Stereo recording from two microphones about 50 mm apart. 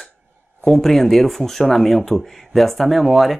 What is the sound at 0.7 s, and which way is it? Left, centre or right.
Speech, centre.